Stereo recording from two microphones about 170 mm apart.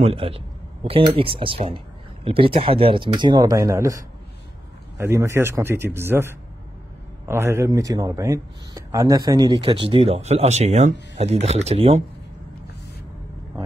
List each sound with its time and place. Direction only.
0.0 s a man's voice: 35° right (ahead or behind); by 6.2 s 15° right (ahead or behind)
7.2 s speech: 15° right (ahead or behind); by 12.0 s 35° right (ahead or behind)